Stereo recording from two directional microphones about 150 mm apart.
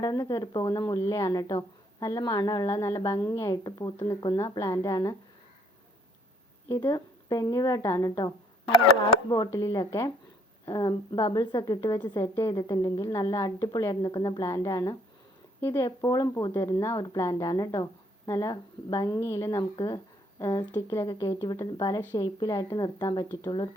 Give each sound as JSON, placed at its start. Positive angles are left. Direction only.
{"t": 0.0, "sound": "a woman's voice", "side_deg": 25}
{"t": 6.7, "sound": "a woman's voice", "side_deg": 20}